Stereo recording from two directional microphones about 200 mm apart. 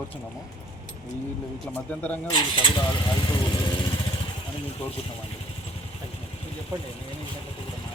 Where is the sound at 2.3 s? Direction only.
25° left (ahead or behind).